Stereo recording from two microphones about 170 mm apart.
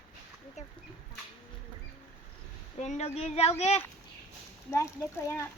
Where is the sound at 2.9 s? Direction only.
40° left (ahead or behind).